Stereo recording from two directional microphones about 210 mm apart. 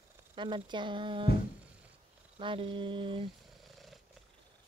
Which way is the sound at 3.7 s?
Centre (ahead or behind).